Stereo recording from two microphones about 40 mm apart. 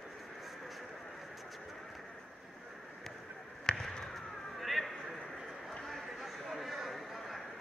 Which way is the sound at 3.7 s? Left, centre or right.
Left.